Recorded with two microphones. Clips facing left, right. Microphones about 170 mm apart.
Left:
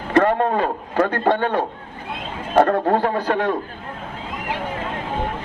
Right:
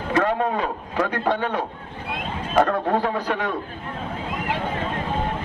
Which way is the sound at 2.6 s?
45° left (ahead or behind).